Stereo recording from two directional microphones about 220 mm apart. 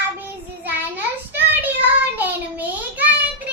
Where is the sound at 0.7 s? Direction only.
10° right (ahead or behind).